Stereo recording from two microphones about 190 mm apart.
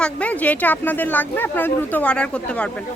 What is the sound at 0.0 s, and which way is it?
Speech, 5° left (ahead or behind).